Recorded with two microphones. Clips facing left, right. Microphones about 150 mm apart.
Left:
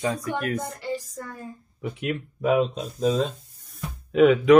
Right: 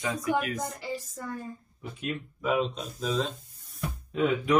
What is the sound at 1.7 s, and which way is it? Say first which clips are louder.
Speech: left 7 dB; 75° left (ahead or behind).